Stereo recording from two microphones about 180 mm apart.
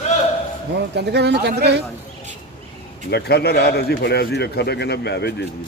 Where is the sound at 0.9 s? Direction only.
65° right (ahead or behind).